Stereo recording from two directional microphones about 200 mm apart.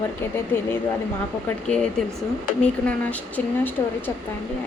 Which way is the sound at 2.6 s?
5° left (ahead or behind).